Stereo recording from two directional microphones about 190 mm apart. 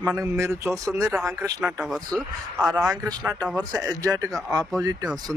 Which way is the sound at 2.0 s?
20° right (ahead or behind).